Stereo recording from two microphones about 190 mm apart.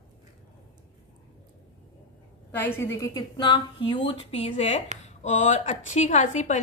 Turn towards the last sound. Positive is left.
turn(degrees=40)  # may be behind; listen again after turning